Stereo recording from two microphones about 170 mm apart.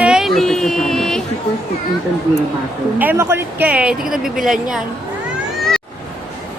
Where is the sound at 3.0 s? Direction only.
10° right (ahead or behind).